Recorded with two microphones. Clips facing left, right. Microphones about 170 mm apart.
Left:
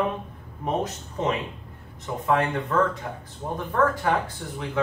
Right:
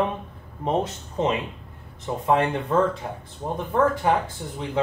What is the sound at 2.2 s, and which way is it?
Speech, 25° right (ahead or behind).